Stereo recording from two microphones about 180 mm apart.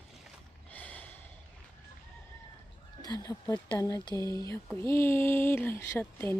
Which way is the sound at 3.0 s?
20° left (ahead or behind).